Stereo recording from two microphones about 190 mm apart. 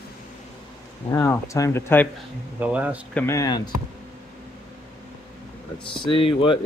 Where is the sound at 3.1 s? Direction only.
10° left (ahead or behind).